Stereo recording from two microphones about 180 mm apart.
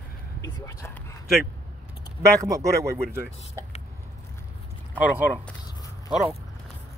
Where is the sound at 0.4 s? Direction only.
15° left (ahead or behind).